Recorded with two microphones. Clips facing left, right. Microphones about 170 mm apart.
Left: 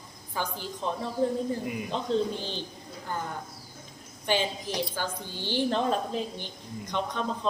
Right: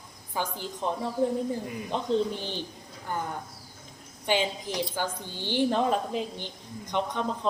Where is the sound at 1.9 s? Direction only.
15° right (ahead or behind).